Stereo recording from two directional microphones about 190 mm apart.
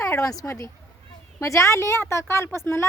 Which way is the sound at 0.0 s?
15° left (ahead or behind).